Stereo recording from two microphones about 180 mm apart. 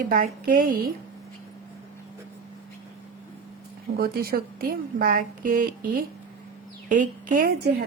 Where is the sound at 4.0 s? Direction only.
55° right (ahead or behind).